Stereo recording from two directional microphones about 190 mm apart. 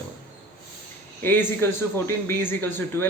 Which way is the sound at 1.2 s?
10° left (ahead or behind).